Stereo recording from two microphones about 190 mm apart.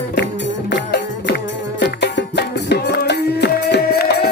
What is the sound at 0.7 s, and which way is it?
Music, 70° left (ahead or behind).